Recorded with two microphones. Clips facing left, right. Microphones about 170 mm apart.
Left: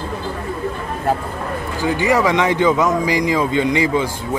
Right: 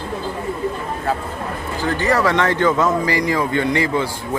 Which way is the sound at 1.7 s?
15° left (ahead or behind).